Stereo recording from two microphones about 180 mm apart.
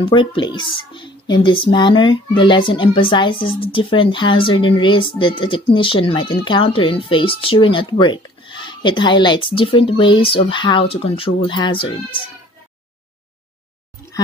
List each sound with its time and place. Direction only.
0.0 s speech: 30° left (ahead or behind)